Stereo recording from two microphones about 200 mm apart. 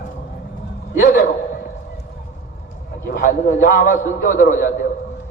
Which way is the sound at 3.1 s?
45° left (ahead or behind).